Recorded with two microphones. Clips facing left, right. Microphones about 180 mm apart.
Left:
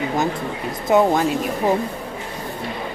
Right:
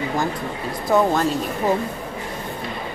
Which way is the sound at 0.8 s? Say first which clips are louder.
Left 2 dB; 20° left (ahead or behind).